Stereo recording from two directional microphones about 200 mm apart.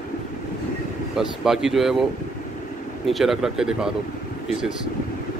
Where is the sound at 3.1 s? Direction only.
Centre (ahead or behind).